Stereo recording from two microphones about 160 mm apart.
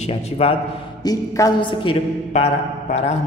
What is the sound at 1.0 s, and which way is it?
Speech, 25° left (ahead or behind).